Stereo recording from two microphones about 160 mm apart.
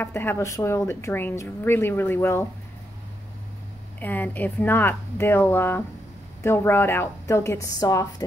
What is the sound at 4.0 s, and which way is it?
A woman's voice, 10° left (ahead or behind).